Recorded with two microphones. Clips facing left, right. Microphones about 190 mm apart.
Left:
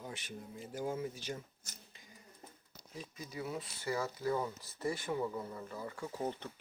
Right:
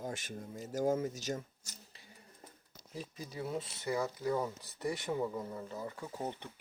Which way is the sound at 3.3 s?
25° right (ahead or behind).